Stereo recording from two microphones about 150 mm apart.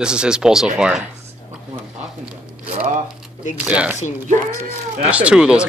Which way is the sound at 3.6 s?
10° right (ahead or behind).